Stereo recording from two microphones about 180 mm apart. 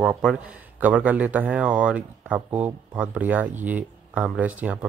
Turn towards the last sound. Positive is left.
turn(degrees=-10)  # may be behind; listen again after turning